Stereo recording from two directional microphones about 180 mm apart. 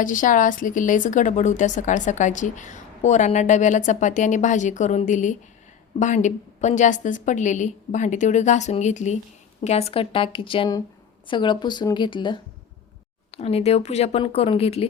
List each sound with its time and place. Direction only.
0.0 s a woman's voice: 45° left (ahead or behind)